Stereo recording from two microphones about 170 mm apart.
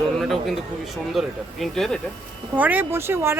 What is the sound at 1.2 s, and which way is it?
Speech, centre (ahead or behind).